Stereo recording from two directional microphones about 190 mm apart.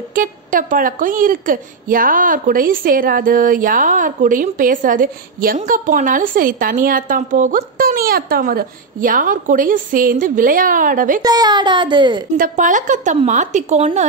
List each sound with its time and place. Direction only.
0.1 s a woman's voice: 45° right (ahead or behind)
11.2 s a woman's voice: 20° right (ahead or behind)
12.4 s a woman's voice: 40° right (ahead or behind)